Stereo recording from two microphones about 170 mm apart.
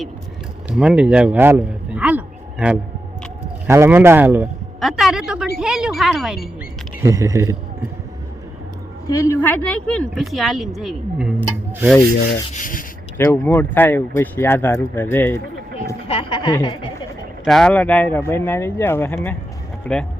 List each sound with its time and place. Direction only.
0.7 s a man's voice: 5° right (ahead or behind)
4.8 s a sound: centre (ahead or behind)
5.5 s speech: 5° right (ahead or behind)
7.0 s speech: 20° right (ahead or behind)
9.0 s speech: 15° left (ahead or behind); by 11.9 s 5° right (ahead or behind)
12.5 s speech: 50° left (ahead or behind)
13.1 s speech: 10° left (ahead or behind)
16.0 s a woman's voice: 30° left (ahead or behind)
17.4 s speech: 5° left (ahead or behind)